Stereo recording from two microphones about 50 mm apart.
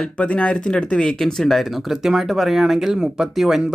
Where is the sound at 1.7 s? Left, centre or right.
Centre.